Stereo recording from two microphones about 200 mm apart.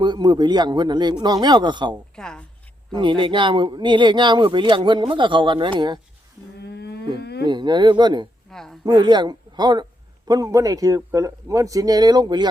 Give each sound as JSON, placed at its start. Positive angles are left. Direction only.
{"t": 0.0, "sound": "speech", "side_deg": -20}
{"t": 2.1, "sound": "speech", "side_deg": 5}
{"t": 2.9, "sound": "speech", "side_deg": -25}
{"t": 6.6, "sound": "wild animals", "side_deg": 55}
{"t": 7.2, "sound": "a sound", "side_deg": 55}
{"t": 7.4, "sound": "speech", "side_deg": -20}
{"t": 8.4, "sound": "a sound", "side_deg": 0}
{"t": 8.8, "sound": "speech", "side_deg": -20}